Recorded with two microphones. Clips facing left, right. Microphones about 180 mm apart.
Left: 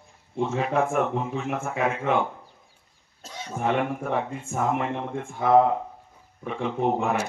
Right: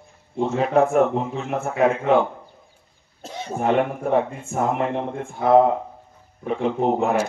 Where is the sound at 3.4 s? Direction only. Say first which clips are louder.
Right 5 dB; 40° right (ahead or behind).